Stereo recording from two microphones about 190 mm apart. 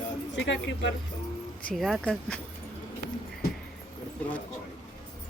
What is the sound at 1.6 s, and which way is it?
Speech, centre (ahead or behind).